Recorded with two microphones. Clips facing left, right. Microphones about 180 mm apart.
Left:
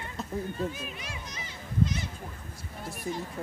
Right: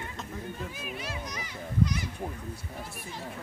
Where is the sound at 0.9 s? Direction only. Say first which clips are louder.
Right 4 dB; 20° left (ahead or behind).